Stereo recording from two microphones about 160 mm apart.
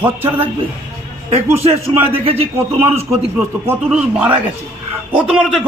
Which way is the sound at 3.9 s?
10° right (ahead or behind).